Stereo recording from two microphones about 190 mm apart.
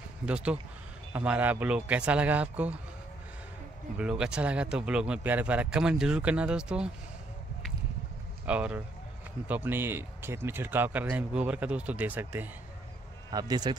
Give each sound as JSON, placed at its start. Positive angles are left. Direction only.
{"t": 0.2, "sound": "speech", "side_deg": -5}
{"t": 4.0, "sound": "speech", "side_deg": -5}
{"t": 8.5, "sound": "speech", "side_deg": -5}
{"t": 13.3, "sound": "speech", "side_deg": -20}